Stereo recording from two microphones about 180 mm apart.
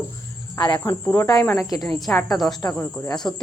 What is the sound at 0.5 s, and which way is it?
Cricket, 25° left (ahead or behind).